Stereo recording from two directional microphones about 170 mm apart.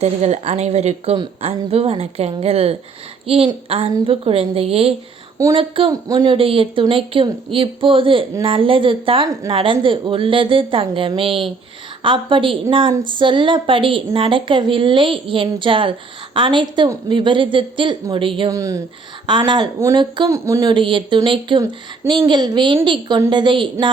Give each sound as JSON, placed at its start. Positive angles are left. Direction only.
{"t": 0.0, "sound": "a woman's voice", "side_deg": -40}
{"t": 8.5, "sound": "a woman's voice", "side_deg": -30}
{"t": 18.5, "sound": "a woman's voice", "side_deg": -20}
{"t": 20.7, "sound": "a woman's voice", "side_deg": -30}